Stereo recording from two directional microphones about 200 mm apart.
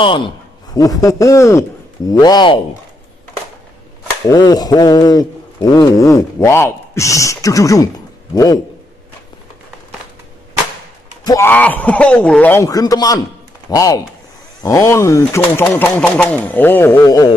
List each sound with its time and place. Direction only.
0.0 s a man's voice: 25° left (ahead or behind)
4.3 s speech: 20° left (ahead or behind)
11.2 s speech: 15° left (ahead or behind)